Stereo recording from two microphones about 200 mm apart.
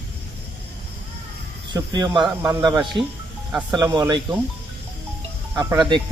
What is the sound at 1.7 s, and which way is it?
Speech, 20° right (ahead or behind).